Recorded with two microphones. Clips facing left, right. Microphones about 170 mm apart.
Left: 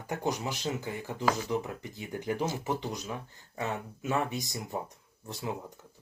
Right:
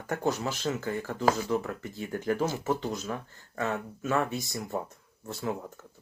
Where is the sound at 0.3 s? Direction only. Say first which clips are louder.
Right 3 dB; 15° left (ahead or behind).